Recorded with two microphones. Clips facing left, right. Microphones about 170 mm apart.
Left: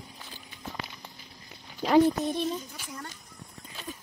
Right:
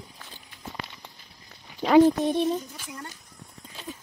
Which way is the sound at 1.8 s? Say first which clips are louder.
Right 4 dB; 75° right (ahead or behind).